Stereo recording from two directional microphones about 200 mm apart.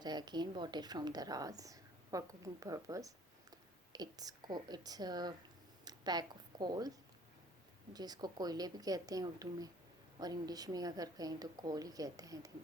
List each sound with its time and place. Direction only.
0.0 s a woman's voice: 20° right (ahead or behind)
7.9 s a woman's voice: 20° right (ahead or behind)